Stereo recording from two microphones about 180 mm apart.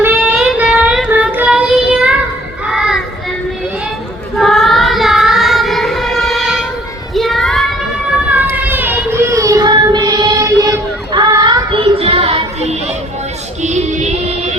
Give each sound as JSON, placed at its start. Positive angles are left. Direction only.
{"t": 0.0, "sound": "child singing", "side_deg": -10}
{"t": 2.6, "sound": "children playing", "side_deg": -5}
{"t": 4.4, "sound": "child singing", "side_deg": 0}
{"t": 7.1, "sound": "children playing", "side_deg": 0}
{"t": 8.3, "sound": "child singing", "side_deg": -10}
{"t": 13.6, "sound": "female singing", "side_deg": -40}